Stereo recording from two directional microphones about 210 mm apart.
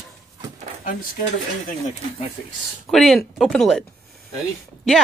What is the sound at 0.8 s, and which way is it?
Speech, 40° left (ahead or behind).